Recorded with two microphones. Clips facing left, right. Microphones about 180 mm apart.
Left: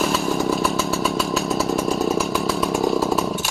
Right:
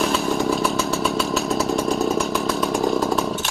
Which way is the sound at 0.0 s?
5° left (ahead or behind).